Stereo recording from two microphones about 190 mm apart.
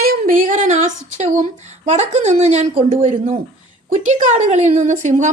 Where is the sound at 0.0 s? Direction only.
50° right (ahead or behind).